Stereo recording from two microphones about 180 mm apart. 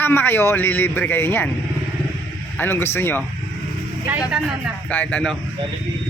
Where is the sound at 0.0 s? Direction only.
10° left (ahead or behind).